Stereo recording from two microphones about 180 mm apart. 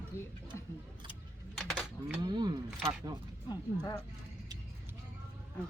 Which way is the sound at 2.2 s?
25° right (ahead or behind).